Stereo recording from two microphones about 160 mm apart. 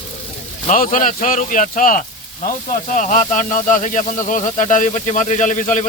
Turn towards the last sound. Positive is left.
turn(degrees=55)  # may be behind; listen again after turning